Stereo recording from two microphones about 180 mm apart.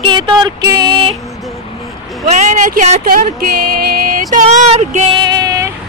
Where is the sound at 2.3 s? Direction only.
40° right (ahead or behind).